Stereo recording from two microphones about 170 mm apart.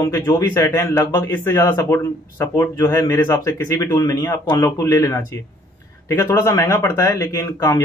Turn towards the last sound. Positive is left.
turn(degrees=15)  # may be behind; listen again after turning